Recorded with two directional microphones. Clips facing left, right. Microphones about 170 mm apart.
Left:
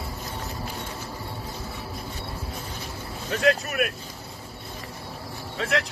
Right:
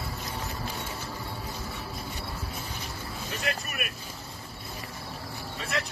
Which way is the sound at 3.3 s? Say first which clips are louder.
Left 12 dB; 90° left.